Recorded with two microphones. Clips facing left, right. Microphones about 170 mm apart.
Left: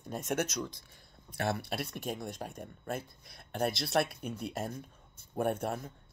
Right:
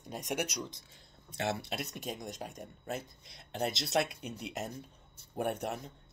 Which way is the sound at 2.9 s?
50° left (ahead or behind).